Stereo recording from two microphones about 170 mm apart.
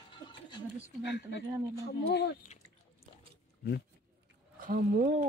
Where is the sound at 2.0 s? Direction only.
75° left (ahead or behind).